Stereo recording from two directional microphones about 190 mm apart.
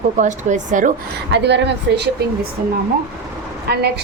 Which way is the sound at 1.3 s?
65° right (ahead or behind).